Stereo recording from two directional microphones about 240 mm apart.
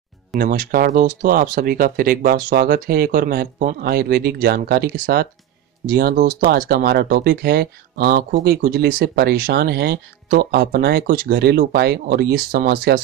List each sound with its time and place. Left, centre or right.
0.4 s speech: right